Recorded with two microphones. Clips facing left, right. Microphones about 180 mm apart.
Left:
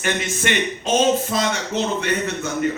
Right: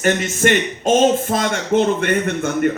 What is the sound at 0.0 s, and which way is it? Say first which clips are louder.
Speech: right 6 dB; 45° right (ahead or behind).